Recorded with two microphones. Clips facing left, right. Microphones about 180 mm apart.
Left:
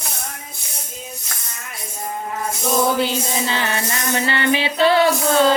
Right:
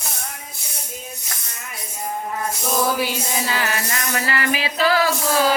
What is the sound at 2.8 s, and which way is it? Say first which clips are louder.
Music: left 3 dB; 25° left (ahead or behind).